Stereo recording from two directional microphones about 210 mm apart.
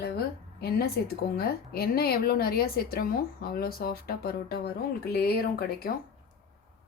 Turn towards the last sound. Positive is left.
turn(degrees=45)  # may be behind; listen again after turning